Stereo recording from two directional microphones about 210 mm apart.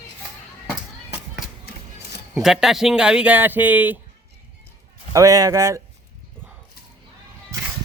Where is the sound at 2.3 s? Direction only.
Centre (ahead or behind).